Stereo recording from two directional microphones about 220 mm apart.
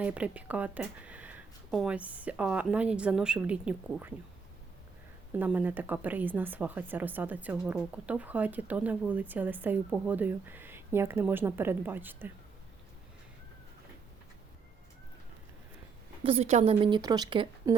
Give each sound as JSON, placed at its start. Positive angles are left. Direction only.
{"t": 0.0, "sound": "speech", "side_deg": -5}
{"t": 5.4, "sound": "a woman's voice", "side_deg": -5}
{"t": 16.2, "sound": "a woman's voice", "side_deg": -25}